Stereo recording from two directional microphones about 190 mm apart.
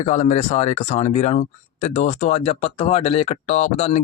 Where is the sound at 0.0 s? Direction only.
40° left (ahead or behind).